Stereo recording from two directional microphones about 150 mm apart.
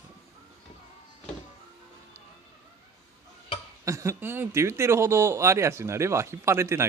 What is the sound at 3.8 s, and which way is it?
Speech, 20° right (ahead or behind).